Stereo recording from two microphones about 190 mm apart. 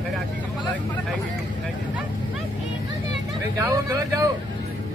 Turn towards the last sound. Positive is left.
turn(degrees=-15)  # may be behind; listen again after turning